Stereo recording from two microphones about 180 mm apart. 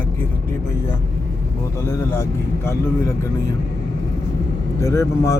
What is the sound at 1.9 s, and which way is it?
Speech, 15° left (ahead or behind).